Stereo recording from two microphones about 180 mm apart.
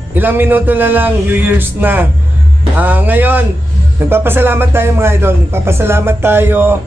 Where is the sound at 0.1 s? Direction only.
10° right (ahead or behind).